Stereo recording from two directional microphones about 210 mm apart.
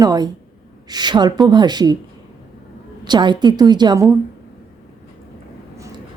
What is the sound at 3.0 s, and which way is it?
A woman's voice, 20° right (ahead or behind).